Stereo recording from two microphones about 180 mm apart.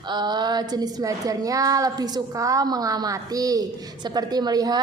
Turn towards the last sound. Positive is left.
turn(degrees=-20)  # may be behind; listen again after turning